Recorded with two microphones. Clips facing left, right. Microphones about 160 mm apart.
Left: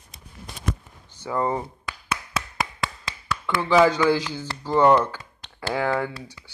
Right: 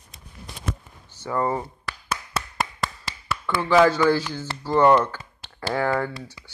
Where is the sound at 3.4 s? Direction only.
10° left (ahead or behind).